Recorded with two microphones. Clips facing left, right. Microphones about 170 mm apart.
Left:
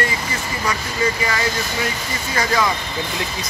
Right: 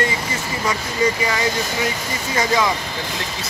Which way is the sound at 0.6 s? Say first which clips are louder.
Right 2 dB; 20° right (ahead or behind).